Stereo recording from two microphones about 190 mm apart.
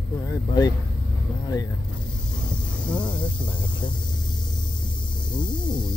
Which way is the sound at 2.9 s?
25° left (ahead or behind).